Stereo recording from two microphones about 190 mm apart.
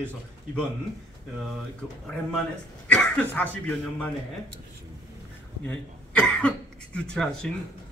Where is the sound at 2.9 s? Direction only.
5° left (ahead or behind).